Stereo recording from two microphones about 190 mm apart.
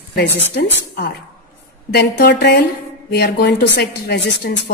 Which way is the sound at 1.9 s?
60° left (ahead or behind).